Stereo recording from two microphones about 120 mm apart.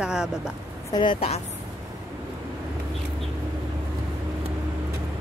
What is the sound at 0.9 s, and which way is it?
Speech, 40° left (ahead or behind).